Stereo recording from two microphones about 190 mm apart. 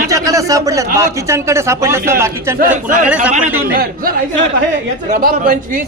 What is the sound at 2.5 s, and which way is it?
Speech, 45° right (ahead or behind).